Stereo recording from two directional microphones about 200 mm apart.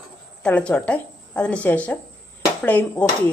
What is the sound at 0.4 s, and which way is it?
A woman's voice, 5° left (ahead or behind).